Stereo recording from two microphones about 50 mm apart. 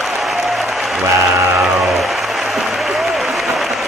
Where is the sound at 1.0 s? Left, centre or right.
Right.